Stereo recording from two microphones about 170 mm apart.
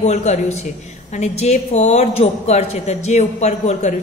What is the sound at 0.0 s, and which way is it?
A woman's voice, 40° left (ahead or behind).